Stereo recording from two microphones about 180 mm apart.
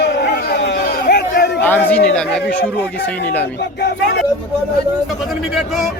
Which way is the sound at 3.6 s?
65° left (ahead or behind).